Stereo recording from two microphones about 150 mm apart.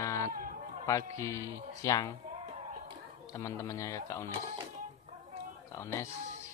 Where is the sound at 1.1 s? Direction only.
20° left (ahead or behind).